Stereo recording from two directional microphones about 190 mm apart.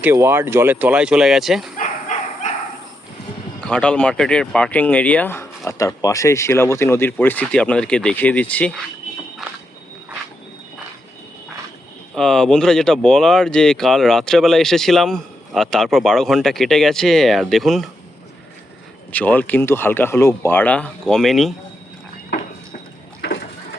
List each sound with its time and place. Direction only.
0.0 s speech: 10° right (ahead or behind)
1.7 s dog: 40° left (ahead or behind)
3.6 s speech: 5° left (ahead or behind)
12.1 s speech: 5° left (ahead or behind)
19.1 s speech: 10° left (ahead or behind)